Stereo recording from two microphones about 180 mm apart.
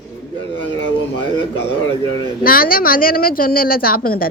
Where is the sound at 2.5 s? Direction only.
55° left (ahead or behind).